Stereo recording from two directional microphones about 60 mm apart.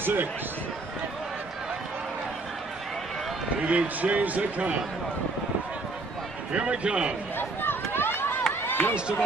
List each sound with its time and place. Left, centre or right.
0.0 s speech: right
3.6 s speech: right
6.5 s speech: centre
7.3 s a sound: left
8.6 s run: left